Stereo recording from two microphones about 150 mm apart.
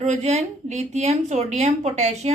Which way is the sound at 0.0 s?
50° right (ahead or behind).